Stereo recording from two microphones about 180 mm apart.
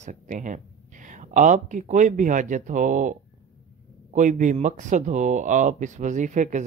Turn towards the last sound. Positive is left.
turn(degrees=-45)  # may be behind; listen again after turning